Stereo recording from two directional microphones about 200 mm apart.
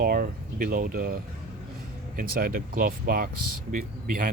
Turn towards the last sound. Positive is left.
turn(degrees=-45)  # may be behind; listen again after turning